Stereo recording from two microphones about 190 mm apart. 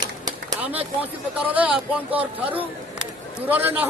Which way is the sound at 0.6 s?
10° right (ahead or behind).